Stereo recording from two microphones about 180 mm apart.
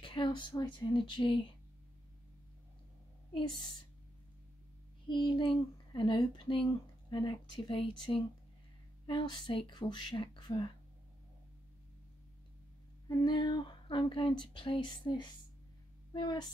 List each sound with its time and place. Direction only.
0.0 s speech: 30° left (ahead or behind)
5.0 s speech: 25° left (ahead or behind)
13.1 s a woman's voice: 25° left (ahead or behind)